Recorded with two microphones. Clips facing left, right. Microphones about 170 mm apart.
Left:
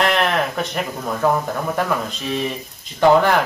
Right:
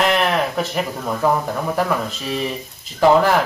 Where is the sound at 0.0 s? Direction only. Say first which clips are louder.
Right 1 dB; centre (ahead or behind).